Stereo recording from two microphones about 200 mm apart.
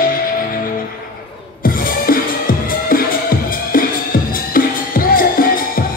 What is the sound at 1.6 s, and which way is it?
Music, 45° left (ahead or behind).